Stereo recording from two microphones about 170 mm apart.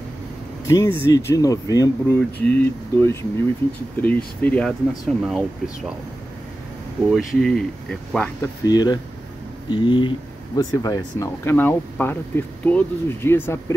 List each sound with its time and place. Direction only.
0.7 s speech: 15° left (ahead or behind); by 5.4 s centre (ahead or behind)
7.1 s speech: centre (ahead or behind)
8.4 s speech: 25° left (ahead or behind)